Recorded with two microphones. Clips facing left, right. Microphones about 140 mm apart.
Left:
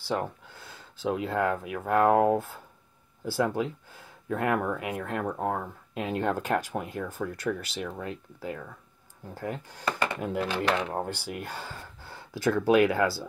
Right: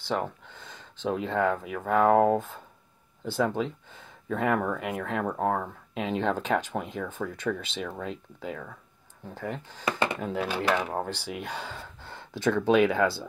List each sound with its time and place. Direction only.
0.5 s speech: 5° left (ahead or behind)
9.8 s speech: 20° right (ahead or behind)
10.4 s speech: 5° right (ahead or behind)
11.2 s speech: 5° left (ahead or behind)